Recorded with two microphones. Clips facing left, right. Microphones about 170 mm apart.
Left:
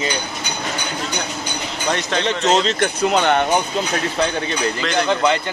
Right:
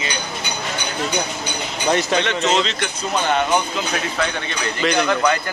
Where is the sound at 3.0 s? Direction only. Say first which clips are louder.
Left 3 dB; 70° left (ahead or behind).